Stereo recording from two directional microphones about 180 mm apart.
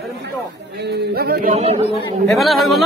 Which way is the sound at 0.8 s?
60° right (ahead or behind).